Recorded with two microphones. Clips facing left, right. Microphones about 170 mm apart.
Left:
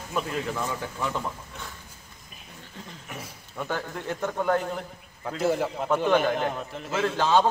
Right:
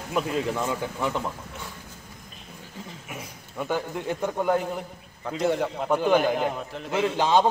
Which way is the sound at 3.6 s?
15° right (ahead or behind).